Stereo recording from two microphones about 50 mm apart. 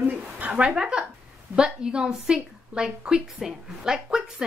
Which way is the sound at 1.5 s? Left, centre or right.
Centre.